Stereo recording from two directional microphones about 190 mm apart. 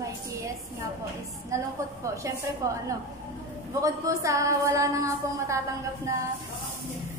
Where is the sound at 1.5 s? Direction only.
15° right (ahead or behind).